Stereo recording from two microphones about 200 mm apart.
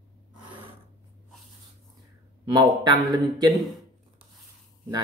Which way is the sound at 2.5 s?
20° right (ahead or behind).